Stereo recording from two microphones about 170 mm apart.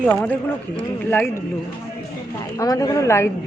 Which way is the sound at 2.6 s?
20° left (ahead or behind).